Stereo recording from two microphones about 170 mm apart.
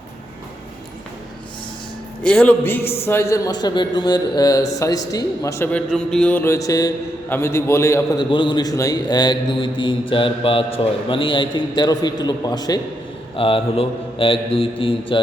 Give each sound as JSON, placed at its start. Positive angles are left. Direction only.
{"t": 2.2, "sound": "a man's voice", "side_deg": 5}